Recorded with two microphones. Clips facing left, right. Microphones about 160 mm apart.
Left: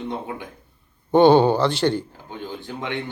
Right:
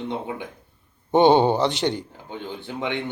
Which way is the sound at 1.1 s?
20° right (ahead or behind).